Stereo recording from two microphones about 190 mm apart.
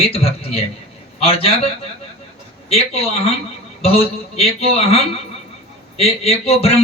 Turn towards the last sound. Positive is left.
turn(degrees=30)  # may be behind; listen again after turning